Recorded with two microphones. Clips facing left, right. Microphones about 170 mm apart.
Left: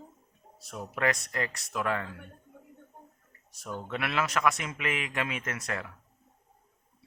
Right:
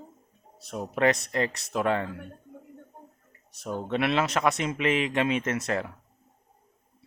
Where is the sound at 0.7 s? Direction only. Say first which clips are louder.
Right 6 dB; 25° right (ahead or behind).